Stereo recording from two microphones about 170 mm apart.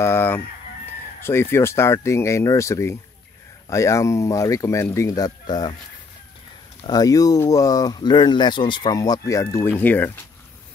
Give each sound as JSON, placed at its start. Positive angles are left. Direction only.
{"t": 0.0, "sound": "chicken", "side_deg": 15}
{"t": 1.2, "sound": "speech", "side_deg": 15}
{"t": 6.8, "sound": "speech", "side_deg": 20}